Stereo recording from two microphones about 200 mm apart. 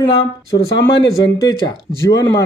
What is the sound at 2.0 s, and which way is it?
Speech, 15° left (ahead or behind).